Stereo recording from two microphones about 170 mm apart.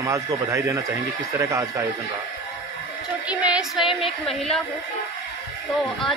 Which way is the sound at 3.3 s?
5° right (ahead or behind).